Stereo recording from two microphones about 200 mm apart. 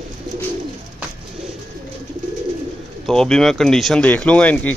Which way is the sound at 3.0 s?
5° left (ahead or behind).